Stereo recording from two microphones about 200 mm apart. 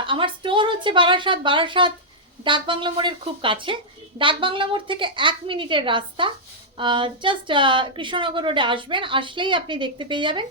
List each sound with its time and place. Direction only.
0.0 s a woman's voice: 25° right (ahead or behind)